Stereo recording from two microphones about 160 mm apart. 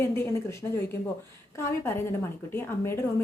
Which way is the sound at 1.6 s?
15° left (ahead or behind).